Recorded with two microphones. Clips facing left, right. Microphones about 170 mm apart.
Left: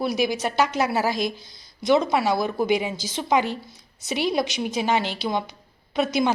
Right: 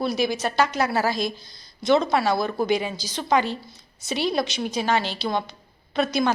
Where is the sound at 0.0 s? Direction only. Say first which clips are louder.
Even; 15° left (ahead or behind).